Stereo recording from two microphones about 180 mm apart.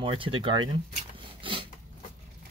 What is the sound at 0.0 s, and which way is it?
Speech, 30° right (ahead or behind).